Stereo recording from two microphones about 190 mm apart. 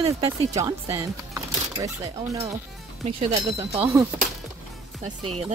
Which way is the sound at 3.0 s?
35° right (ahead or behind).